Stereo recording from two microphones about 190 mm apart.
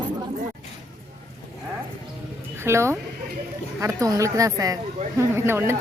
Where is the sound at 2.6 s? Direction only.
15° right (ahead or behind).